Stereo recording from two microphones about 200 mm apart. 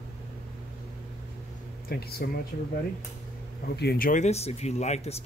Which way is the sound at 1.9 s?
50° left (ahead or behind).